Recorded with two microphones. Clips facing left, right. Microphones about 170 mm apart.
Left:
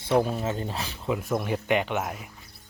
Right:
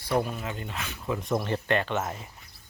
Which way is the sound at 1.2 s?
5° left (ahead or behind).